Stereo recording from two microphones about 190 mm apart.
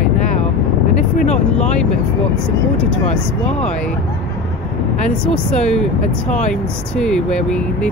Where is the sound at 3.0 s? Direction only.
35° left (ahead or behind).